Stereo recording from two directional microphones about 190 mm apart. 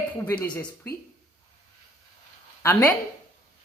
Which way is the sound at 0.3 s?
10° left (ahead or behind).